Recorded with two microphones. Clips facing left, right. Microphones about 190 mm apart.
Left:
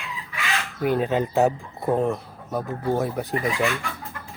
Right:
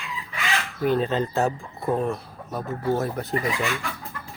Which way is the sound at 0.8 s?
10° left (ahead or behind).